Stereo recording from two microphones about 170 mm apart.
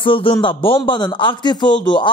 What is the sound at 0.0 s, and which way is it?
Speech, 30° left (ahead or behind).